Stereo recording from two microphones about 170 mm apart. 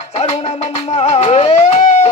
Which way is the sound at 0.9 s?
40° left (ahead or behind).